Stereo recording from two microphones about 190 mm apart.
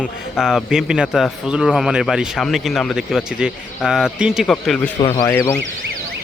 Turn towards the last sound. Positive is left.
turn(degrees=10)  # may be behind; listen again after turning